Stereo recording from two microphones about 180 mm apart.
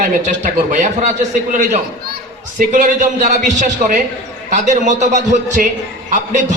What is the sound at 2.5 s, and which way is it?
A man's voice, 45° right (ahead or behind).